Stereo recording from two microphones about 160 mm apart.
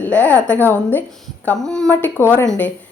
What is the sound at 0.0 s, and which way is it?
A woman's voice, 10° left (ahead or behind).